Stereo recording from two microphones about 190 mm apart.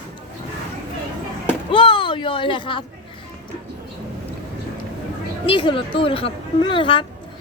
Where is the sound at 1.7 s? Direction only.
25° left (ahead or behind).